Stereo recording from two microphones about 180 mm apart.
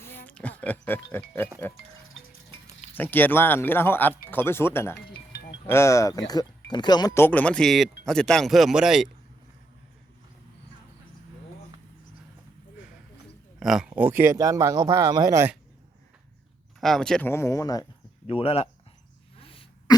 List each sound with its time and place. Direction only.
0.0 s music: 10° left (ahead or behind)
2.9 s speech: 10° left (ahead or behind)
13.6 s speech: centre (ahead or behind)
16.8 s speech: 5° left (ahead or behind); by 17.8 s 20° left (ahead or behind)
18.3 s speech: 30° left (ahead or behind)
19.4 s sneeze: 30° left (ahead or behind)